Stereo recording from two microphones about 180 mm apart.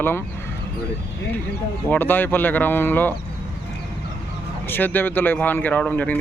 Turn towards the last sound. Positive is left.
turn(degrees=10)  # may be behind; listen again after turning